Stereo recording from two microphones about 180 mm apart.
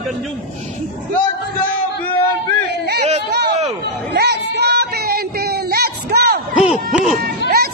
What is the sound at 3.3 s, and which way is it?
Speech, 65° right (ahead or behind).